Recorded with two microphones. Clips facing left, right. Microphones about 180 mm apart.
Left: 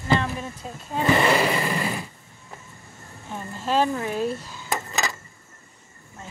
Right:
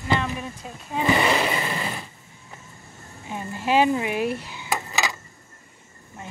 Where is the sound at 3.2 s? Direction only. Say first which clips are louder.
Right 2 dB; 10° right (ahead or behind).